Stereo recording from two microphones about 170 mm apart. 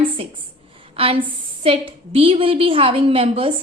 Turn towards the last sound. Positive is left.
turn(degrees=-35)  # may be behind; listen again after turning